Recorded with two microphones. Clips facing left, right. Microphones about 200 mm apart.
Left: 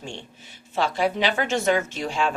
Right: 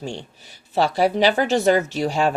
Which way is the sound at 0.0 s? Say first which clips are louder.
Right 6 dB; 40° right (ahead or behind).